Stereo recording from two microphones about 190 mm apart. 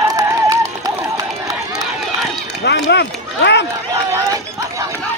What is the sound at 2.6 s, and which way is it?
Speech, 65° left (ahead or behind).